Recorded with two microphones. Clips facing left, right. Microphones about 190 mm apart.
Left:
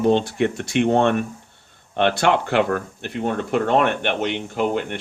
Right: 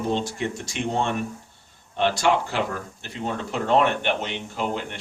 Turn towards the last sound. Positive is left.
turn(degrees=55)  # may be behind; listen again after turning